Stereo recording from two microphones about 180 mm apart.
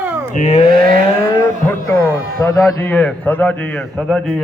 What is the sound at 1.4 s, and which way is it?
A man's voice, 15° left (ahead or behind).